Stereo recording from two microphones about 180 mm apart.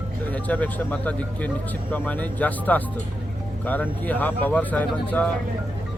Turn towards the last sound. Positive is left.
turn(degrees=10)  # may be behind; listen again after turning